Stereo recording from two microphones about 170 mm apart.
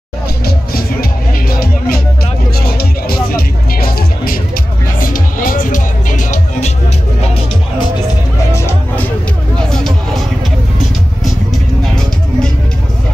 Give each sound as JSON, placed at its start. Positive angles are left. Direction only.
{"t": 1.5, "sound": "music", "side_deg": 60}
{"t": 8.5, "sound": "music", "side_deg": 10}
{"t": 11.8, "sound": "music", "side_deg": 5}